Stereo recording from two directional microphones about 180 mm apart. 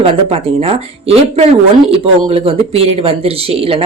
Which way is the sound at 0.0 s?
30° right (ahead or behind).